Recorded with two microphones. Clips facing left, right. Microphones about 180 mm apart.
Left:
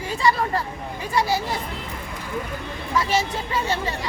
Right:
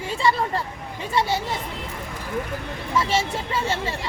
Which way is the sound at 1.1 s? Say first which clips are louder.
Left 1 dB; 25° right (ahead or behind).